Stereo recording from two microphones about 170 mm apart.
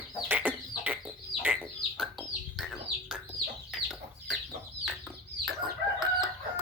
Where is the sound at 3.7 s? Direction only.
Centre (ahead or behind).